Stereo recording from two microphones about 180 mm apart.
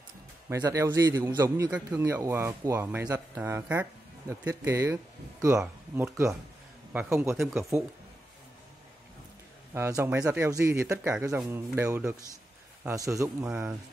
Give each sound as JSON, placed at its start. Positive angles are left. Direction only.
{"t": 0.5, "sound": "a man's voice", "side_deg": -15}
{"t": 9.8, "sound": "a man's voice", "side_deg": -15}
{"t": 13.5, "sound": "speech", "side_deg": -5}